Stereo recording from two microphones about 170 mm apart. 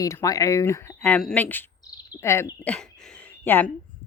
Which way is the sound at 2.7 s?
10° left (ahead or behind).